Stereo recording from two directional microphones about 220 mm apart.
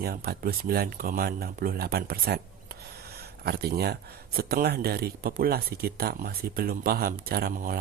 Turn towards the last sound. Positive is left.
turn(degrees=-40)  # may be behind; listen again after turning